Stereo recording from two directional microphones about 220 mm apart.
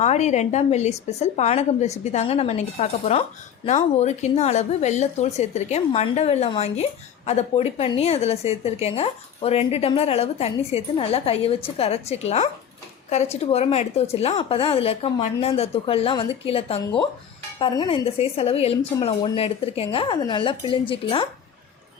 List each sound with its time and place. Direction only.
0.0 s a woman's voice: 30° left (ahead or behind)